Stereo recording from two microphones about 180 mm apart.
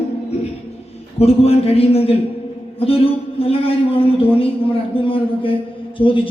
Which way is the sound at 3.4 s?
30° left (ahead or behind).